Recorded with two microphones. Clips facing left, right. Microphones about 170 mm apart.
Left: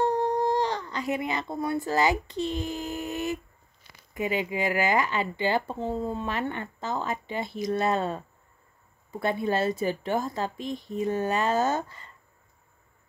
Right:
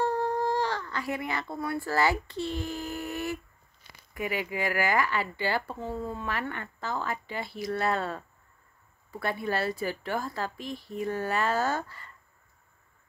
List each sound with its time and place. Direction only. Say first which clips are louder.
0.0 s speech: left 3 dB; 20° left (ahead or behind)